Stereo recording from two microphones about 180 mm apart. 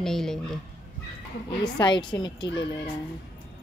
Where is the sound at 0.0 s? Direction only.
Centre (ahead or behind).